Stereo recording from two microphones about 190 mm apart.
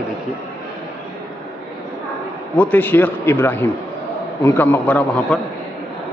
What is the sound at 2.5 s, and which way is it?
A man's voice, 10° left (ahead or behind).